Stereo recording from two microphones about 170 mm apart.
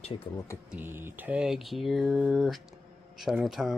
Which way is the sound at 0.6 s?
10° right (ahead or behind).